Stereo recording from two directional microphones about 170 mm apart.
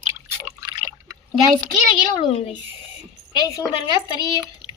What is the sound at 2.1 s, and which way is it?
Speech, 35° left (ahead or behind).